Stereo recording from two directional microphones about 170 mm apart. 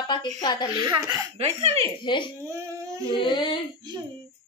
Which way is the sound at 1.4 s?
40° right (ahead or behind).